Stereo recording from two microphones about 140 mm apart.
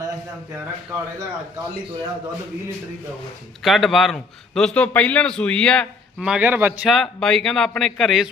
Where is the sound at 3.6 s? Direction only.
Centre (ahead or behind).